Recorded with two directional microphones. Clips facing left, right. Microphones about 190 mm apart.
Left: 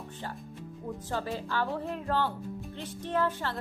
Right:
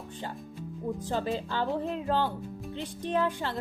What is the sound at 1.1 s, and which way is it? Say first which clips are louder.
Speech: right 1 dB; 20° right (ahead or behind).